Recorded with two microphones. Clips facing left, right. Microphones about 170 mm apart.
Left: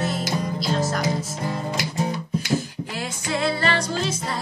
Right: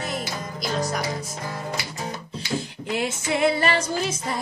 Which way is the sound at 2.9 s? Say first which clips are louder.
Right 5 dB; 20° right (ahead or behind).